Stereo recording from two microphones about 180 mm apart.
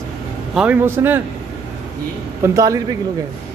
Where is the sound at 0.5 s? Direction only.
10° right (ahead or behind).